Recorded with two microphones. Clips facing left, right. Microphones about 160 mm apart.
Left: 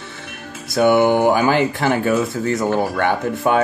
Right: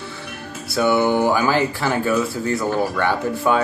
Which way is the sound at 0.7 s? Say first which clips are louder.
Left 3 dB; 15° left (ahead or behind).